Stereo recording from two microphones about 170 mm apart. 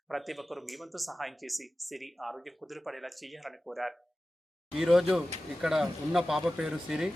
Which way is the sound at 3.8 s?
Centre (ahead or behind).